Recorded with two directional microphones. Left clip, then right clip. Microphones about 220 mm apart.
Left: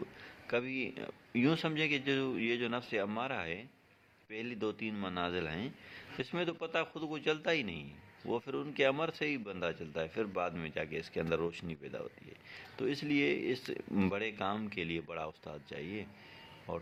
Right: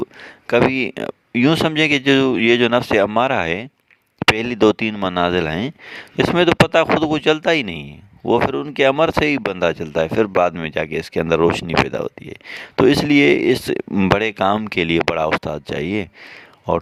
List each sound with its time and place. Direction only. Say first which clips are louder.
0.0 s speech: right 18 dB; 50° right (ahead or behind)